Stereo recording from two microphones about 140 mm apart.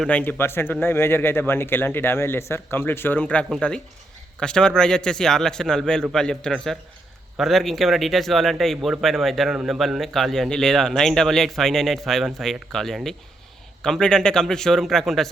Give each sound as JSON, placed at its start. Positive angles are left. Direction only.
{"t": 0.0, "sound": "speech", "side_deg": 10}